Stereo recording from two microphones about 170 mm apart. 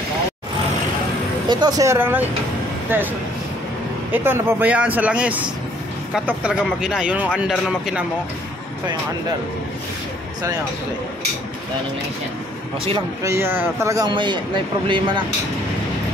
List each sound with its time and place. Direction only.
1.5 s a man's voice: 25° right (ahead or behind)
4.1 s a man's voice: 15° right (ahead or behind)
13.2 s a man's voice: 15° right (ahead or behind)